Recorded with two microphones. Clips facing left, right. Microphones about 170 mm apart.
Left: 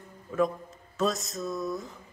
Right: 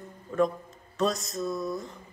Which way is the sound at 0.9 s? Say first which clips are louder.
Right 1 dB; centre (ahead or behind).